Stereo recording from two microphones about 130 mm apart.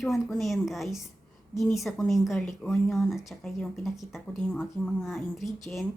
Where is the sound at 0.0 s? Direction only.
Centre (ahead or behind).